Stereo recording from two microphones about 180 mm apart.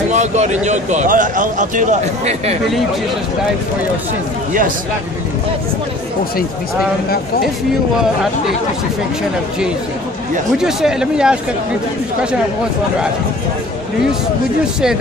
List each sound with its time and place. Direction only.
0.1 s a man's voice: 40° right (ahead or behind)
10.6 s speech: 5° right (ahead or behind)